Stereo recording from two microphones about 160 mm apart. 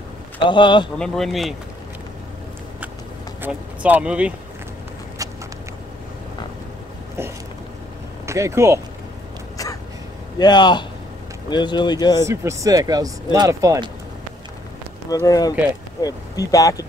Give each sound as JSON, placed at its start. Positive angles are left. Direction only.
{"t": 0.5, "sound": "speech", "side_deg": 30}
{"t": 0.9, "sound": "speech", "side_deg": 5}
{"t": 3.4, "sound": "speech", "side_deg": -10}
{"t": 8.3, "sound": "speech", "side_deg": -20}
{"t": 10.4, "sound": "speech", "side_deg": 25}
{"t": 12.2, "sound": "speech", "side_deg": -20}
{"t": 15.0, "sound": "speech", "side_deg": 20}